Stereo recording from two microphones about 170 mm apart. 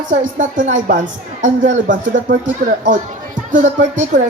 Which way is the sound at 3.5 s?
45° right (ahead or behind).